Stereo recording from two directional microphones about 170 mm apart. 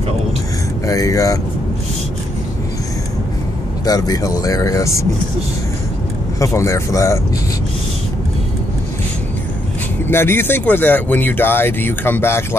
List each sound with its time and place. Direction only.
0.8 s speech: 20° left (ahead or behind)
3.8 s speech: 20° left (ahead or behind)
6.4 s speech: 15° left (ahead or behind)
10.0 s speech: 15° left (ahead or behind)